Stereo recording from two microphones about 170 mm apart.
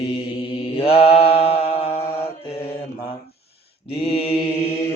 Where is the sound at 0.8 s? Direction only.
35° left (ahead or behind).